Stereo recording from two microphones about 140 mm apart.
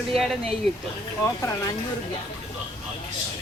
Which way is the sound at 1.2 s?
25° left (ahead or behind).